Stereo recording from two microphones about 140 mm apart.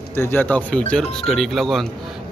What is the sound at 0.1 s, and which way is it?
A man's voice, 15° left (ahead or behind).